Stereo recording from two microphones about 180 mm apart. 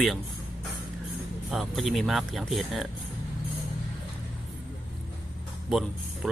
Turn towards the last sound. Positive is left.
turn(degrees=0)  # may be behind; listen again after turning